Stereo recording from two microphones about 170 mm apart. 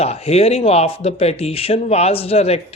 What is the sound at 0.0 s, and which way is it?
Speech, 35° left (ahead or behind).